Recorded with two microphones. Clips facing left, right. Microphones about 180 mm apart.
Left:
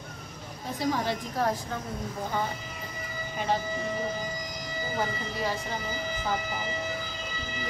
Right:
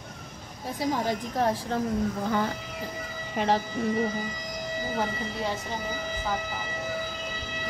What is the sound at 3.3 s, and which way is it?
Speech, 75° right (ahead or behind).